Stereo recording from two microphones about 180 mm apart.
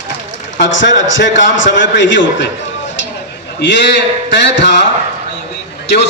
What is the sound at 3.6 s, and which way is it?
A man's voice, 75° left (ahead or behind).